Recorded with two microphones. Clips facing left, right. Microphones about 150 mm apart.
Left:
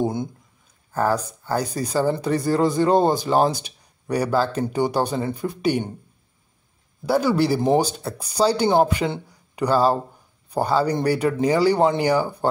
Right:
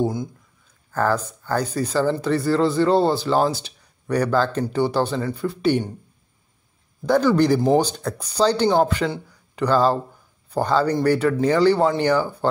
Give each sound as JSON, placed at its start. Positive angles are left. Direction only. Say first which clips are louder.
{"t": 0.0, "sound": "speech", "louder": "right 1 dB", "side_deg": 25}
{"t": 0.9, "sound": "speech", "louder": "even", "side_deg": 10}
{"t": 7.1, "sound": "speech", "louder": "right 2 dB", "side_deg": 10}